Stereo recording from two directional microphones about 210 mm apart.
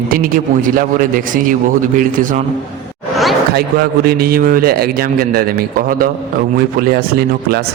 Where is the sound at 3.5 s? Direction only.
45° right (ahead or behind).